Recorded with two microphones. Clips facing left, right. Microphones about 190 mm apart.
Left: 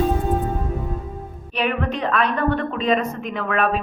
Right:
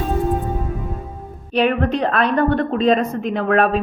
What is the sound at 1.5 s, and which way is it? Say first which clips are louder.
A woman's voice: right 6 dB; 40° right (ahead or behind).